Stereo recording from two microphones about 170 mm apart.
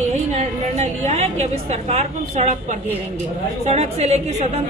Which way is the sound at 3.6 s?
40° right (ahead or behind).